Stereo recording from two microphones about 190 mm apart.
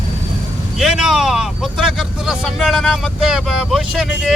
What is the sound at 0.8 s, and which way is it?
Speech, 5° right (ahead or behind).